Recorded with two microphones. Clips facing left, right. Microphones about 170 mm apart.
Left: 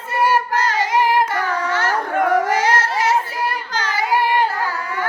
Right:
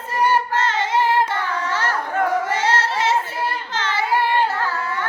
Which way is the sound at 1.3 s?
30° right (ahead or behind).